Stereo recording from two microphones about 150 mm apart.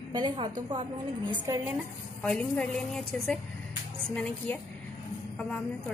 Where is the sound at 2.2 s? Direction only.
5° left (ahead or behind).